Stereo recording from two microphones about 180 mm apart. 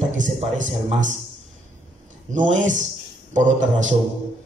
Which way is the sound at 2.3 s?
45° right (ahead or behind).